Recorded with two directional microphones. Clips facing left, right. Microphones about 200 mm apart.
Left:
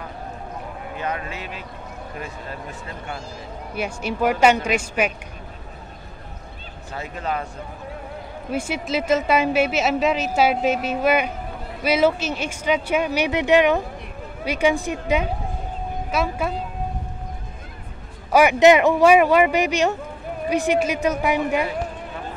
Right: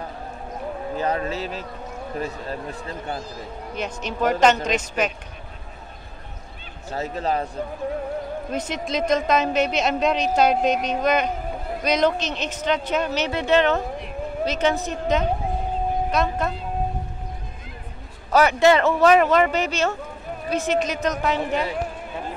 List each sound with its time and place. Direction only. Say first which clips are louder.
0.9 s speech: right 4 dB; 35° right (ahead or behind)
3.7 s a woman's voice: left 3 dB; 10° left (ahead or behind)
6.9 s speech: right 3 dB; 35° right (ahead or behind)
8.5 s a woman's voice: left 6 dB; 10° left (ahead or behind)
18.3 s a woman's voice: left 3 dB; 15° left (ahead or behind)